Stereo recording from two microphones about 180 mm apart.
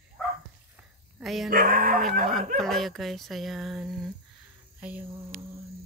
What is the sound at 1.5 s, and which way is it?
Speech, 50° right (ahead or behind).